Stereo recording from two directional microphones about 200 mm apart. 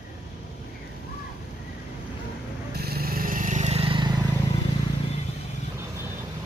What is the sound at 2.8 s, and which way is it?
Vehicle, 50° right (ahead or behind).